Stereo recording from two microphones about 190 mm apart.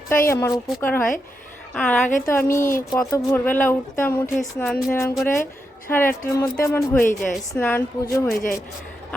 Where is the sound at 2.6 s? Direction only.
45° left (ahead or behind).